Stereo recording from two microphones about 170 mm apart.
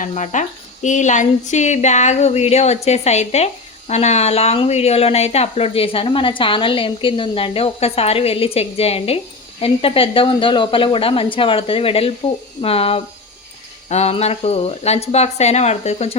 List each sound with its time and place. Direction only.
0.0 s speech: 45° left (ahead or behind)